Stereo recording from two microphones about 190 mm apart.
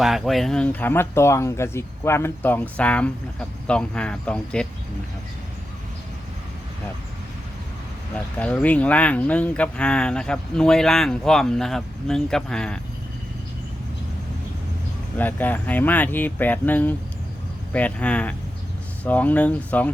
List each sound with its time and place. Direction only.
0.0 s speech: centre (ahead or behind)
8.1 s speech: 5° left (ahead or behind)
15.2 s speech: 10° left (ahead or behind)